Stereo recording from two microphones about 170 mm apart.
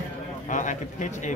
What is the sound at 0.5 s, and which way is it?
Speech, 45° left (ahead or behind).